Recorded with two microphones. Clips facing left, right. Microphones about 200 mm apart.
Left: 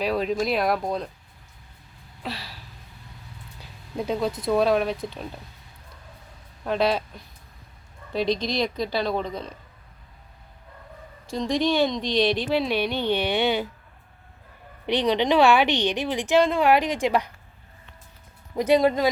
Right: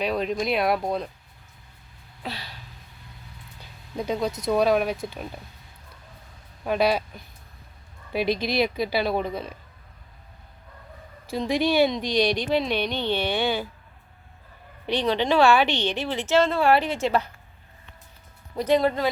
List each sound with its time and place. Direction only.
0.0 s speech: centre (ahead or behind)
2.2 s a sound: centre (ahead or behind)
3.6 s a sound: centre (ahead or behind)
4.4 s speech: centre (ahead or behind)
6.7 s a woman's voice: 5° right (ahead or behind)
11.3 s speech: 5° right (ahead or behind); by 13.7 s 20° left (ahead or behind)
14.8 s a woman's voice: 20° left (ahead or behind)
18.5 s a woman's voice: 15° left (ahead or behind)